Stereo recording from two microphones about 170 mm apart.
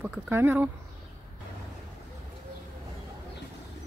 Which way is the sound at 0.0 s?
10° right (ahead or behind).